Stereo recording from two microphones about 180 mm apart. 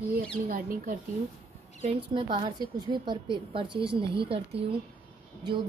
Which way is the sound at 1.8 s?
30° right (ahead or behind).